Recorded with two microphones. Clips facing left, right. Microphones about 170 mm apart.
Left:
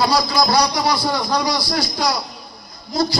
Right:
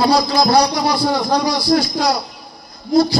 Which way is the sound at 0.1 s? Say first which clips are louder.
Right 4 dB; 55° right (ahead or behind).